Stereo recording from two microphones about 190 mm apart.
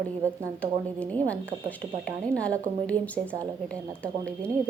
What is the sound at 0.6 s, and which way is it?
Speech, 5° left (ahead or behind).